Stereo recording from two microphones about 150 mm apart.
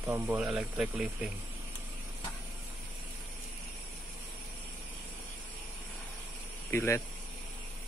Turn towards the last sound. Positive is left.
turn(degrees=15)  # may be behind; listen again after turning